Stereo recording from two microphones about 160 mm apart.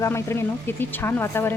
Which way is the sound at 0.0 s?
15° left (ahead or behind).